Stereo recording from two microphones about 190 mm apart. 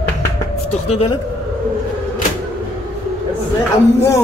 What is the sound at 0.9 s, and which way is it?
Speech, 30° left (ahead or behind).